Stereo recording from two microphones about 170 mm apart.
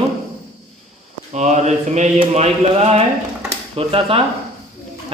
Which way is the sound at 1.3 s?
45° right (ahead or behind).